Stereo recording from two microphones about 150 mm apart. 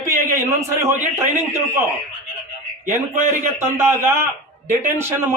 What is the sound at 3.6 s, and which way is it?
Speech, 15° right (ahead or behind).